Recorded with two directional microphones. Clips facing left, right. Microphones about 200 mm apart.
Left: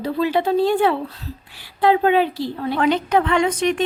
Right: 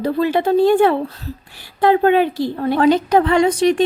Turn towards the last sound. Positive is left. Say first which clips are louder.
# right 5 dB
turn(degrees=-35)  # may be behind; listen again after turning